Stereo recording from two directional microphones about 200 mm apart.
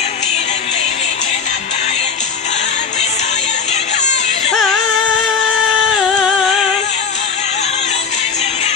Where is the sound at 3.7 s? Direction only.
35° left (ahead or behind).